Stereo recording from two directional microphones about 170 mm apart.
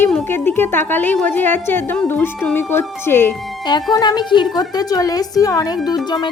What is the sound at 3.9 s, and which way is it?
Music, 25° left (ahead or behind).